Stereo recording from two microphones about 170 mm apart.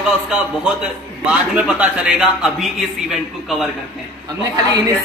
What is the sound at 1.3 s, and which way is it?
A man's voice, 10° right (ahead or behind).